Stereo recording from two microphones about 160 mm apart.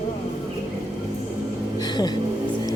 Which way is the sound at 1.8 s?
25° left (ahead or behind).